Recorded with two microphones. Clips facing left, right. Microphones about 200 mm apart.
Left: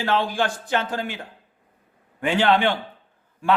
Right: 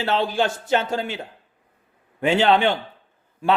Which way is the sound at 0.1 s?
20° right (ahead or behind).